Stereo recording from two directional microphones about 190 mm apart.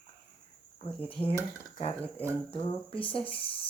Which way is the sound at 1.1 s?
30° left (ahead or behind).